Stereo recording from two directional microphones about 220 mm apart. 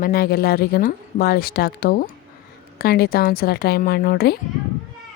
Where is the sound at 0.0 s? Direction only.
45° left (ahead or behind).